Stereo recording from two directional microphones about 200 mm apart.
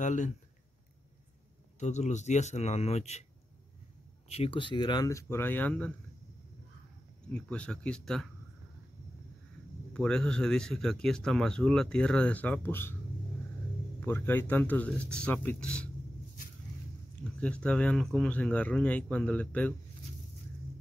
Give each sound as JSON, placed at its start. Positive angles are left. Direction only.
{"t": 0.0, "sound": "speech", "side_deg": 40}
{"t": 1.8, "sound": "a man's voice", "side_deg": 35}
{"t": 4.3, "sound": "speech", "side_deg": 25}
{"t": 7.2, "sound": "speech", "side_deg": 5}
{"t": 9.9, "sound": "speech", "side_deg": 5}
{"t": 13.9, "sound": "speech", "side_deg": 10}
{"t": 17.2, "sound": "speech", "side_deg": 5}